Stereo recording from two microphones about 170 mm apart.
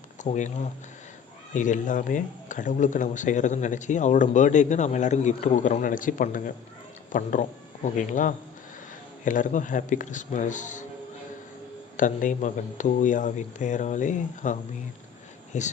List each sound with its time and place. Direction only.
0.2 s speech: 45° left (ahead or behind)
11.9 s speech: 50° left (ahead or behind)